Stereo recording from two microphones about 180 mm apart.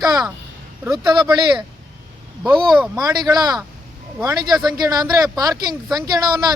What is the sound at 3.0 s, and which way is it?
Speech, 20° right (ahead or behind).